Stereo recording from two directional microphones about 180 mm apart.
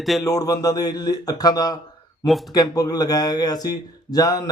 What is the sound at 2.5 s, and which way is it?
A man's voice, 20° left (ahead or behind).